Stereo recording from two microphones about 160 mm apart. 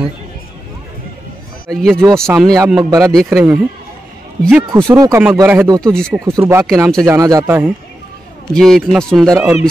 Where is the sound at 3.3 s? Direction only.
10° right (ahead or behind).